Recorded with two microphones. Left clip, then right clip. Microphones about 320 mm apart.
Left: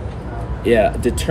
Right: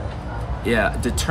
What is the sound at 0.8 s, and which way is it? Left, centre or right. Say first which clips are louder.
Speech: left 5 dB; centre.